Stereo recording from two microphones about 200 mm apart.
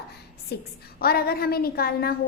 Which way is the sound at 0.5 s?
55° left (ahead or behind).